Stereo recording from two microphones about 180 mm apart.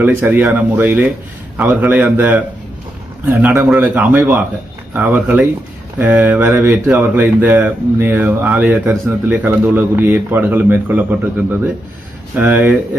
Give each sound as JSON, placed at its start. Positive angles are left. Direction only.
{"t": 0.0, "sound": "speech", "side_deg": -10}
{"t": 12.4, "sound": "speech", "side_deg": -10}